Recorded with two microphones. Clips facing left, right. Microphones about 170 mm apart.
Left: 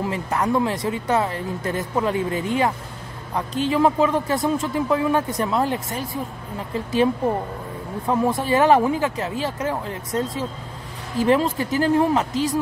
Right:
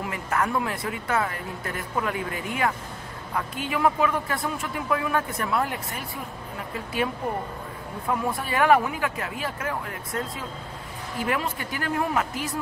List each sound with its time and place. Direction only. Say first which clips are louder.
0.0 s a woman's voice: left 4 dB; 20° left (ahead or behind)
8.1 s a woman's voice: left 7 dB; 25° left (ahead or behind)